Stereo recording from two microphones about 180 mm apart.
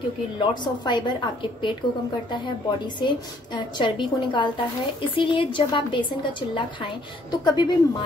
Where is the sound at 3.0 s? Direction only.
25° left (ahead or behind).